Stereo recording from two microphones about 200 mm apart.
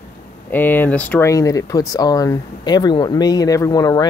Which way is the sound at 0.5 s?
10° left (ahead or behind).